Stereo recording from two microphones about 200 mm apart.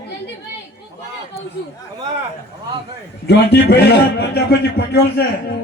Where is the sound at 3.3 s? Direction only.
55° left (ahead or behind).